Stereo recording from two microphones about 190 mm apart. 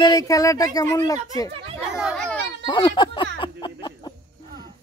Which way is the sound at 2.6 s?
25° left (ahead or behind).